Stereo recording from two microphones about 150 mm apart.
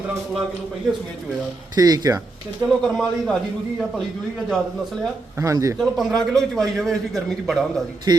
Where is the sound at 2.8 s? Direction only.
5° left (ahead or behind).